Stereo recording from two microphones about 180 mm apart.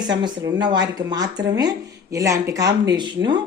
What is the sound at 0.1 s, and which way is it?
A woman's voice, 25° right (ahead or behind).